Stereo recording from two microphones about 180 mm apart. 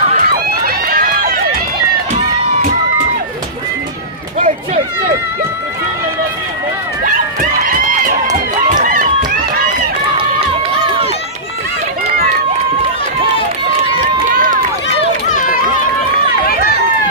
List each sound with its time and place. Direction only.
0.1 s run: 50° right (ahead or behind)
7.1 s run: 50° right (ahead or behind)
14.0 s run: 50° right (ahead or behind)
15.3 s run: 45° left (ahead or behind)
16.4 s run: 60° left (ahead or behind)